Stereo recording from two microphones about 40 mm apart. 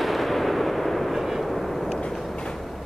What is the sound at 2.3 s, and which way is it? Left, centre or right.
Train, left.